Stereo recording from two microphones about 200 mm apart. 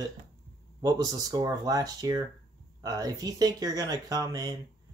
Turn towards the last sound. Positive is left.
turn(degrees=-20)  # may be behind; listen again after turning